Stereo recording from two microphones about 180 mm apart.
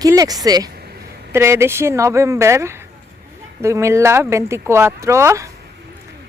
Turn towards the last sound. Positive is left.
turn(degrees=-15)  # may be behind; listen again after turning